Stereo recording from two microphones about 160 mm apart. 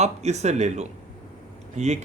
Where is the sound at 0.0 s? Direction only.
45° right (ahead or behind).